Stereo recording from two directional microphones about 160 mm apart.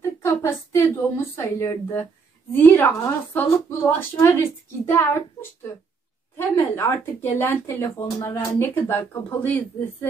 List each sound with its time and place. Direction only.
0.0 s a woman's voice: 15° left (ahead or behind)